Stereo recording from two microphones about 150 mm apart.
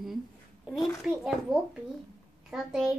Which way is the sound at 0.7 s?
Centre (ahead or behind).